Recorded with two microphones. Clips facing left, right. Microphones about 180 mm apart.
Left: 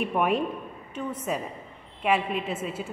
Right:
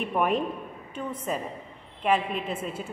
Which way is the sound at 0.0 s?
5° left (ahead or behind).